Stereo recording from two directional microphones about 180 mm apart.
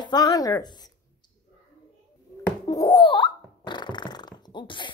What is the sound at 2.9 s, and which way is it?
Hiccup, 25° left (ahead or behind).